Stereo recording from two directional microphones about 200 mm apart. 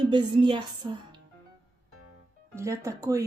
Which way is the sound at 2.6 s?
15° right (ahead or behind).